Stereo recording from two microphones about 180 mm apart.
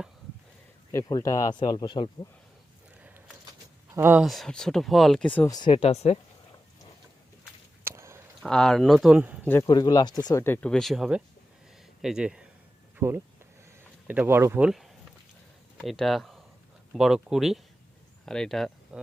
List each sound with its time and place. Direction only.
0.9 s speech: 15° left (ahead or behind)
3.0 s a sound: 10° right (ahead or behind)
3.9 s speech: 10° right (ahead or behind)
4.2 s speech: centre (ahead or behind)
5.5 s speech: 25° left (ahead or behind)
5.7 s speech: 35° left (ahead or behind)
7.9 s a sound: 15° right (ahead or behind)
8.4 s speech: 5° left (ahead or behind)
9.5 s speech: 20° left (ahead or behind); by 18.9 s centre (ahead or behind)